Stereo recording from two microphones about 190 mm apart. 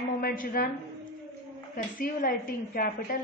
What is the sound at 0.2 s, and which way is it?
Speech, 50° left (ahead or behind).